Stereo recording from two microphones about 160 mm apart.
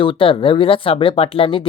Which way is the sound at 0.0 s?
35° left (ahead or behind).